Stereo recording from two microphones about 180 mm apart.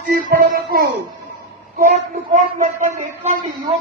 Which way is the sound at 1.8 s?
45° right (ahead or behind).